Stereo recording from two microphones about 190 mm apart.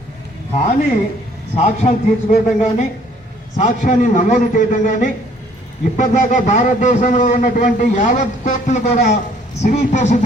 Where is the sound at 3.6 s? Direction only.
40° left (ahead or behind).